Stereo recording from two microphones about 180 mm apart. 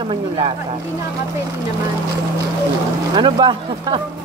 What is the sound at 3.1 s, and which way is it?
Speech, 25° right (ahead or behind).